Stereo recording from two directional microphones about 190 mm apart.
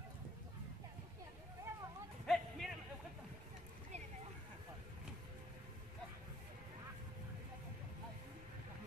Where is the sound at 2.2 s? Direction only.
Centre (ahead or behind).